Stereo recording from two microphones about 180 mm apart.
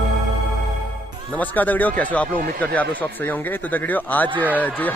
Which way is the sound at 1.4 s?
10° left (ahead or behind).